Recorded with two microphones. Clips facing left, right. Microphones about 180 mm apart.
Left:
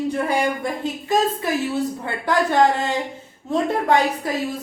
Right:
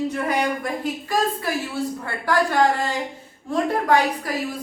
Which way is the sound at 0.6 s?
25° left (ahead or behind).